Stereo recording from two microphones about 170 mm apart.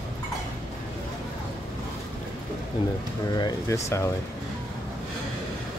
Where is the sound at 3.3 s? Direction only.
20° left (ahead or behind).